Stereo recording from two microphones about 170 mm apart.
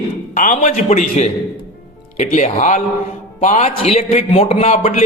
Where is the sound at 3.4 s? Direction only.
45° left (ahead or behind).